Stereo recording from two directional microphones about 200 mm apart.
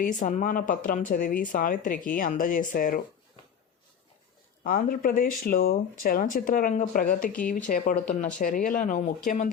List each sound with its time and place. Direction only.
0.0 s speech: 40° left (ahead or behind)
4.6 s speech: 45° left (ahead or behind)